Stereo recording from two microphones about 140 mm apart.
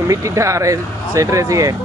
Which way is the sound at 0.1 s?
20° right (ahead or behind).